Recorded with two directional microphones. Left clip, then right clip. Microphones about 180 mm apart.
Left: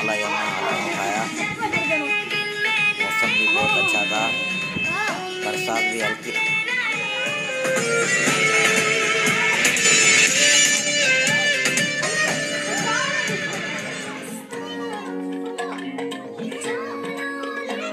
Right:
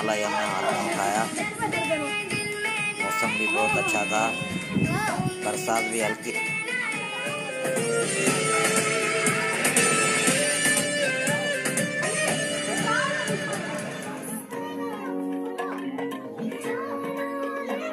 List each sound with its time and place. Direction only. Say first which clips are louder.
0.0 s speech: left 3 dB; centre (ahead or behind)
2.3 s music: left 6 dB; 85° right
3.3 s speech: left 7 dB; 90° right
3.8 s speech: left 4 dB; centre (ahead or behind)
5.7 s speech: left 3 dB; centre (ahead or behind)
6.3 s music: left 6 dB; 90° right
7.6 s music: left 5 dB; 10° right (ahead or behind); by 13.4 s 30° right (ahead or behind)